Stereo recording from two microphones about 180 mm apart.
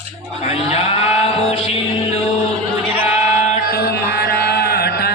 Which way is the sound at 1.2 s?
35° left (ahead or behind).